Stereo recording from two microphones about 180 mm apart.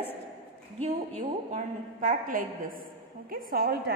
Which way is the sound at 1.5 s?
45° right (ahead or behind).